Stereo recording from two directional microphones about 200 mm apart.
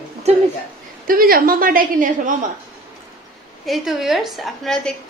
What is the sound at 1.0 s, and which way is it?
A woman's voice, 45° right (ahead or behind).